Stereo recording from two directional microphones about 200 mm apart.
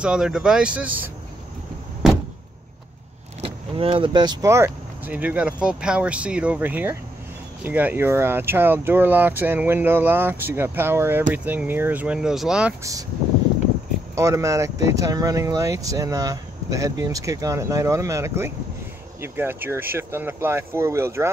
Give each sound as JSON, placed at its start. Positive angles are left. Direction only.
{"t": 0.0, "sound": "speech", "side_deg": -5}
{"t": 3.3, "sound": "speech", "side_deg": -30}
{"t": 14.1, "sound": "speech", "side_deg": -15}